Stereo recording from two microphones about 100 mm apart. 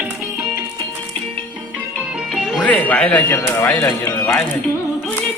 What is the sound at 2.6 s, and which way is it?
Speech, 15° left (ahead or behind).